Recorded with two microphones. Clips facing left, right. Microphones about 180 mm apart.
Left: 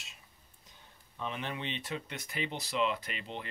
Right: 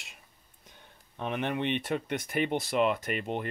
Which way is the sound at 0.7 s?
60° right (ahead or behind).